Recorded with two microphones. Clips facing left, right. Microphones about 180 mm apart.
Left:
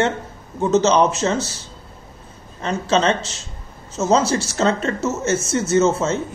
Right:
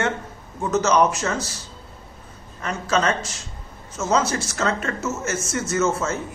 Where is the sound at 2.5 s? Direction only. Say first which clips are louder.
Left 4 dB; 25° left (ahead or behind).